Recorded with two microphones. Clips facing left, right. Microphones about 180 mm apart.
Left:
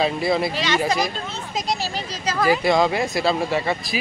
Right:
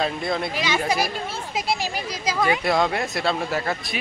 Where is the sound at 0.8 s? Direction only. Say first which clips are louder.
Left 1 dB; 10° right (ahead or behind).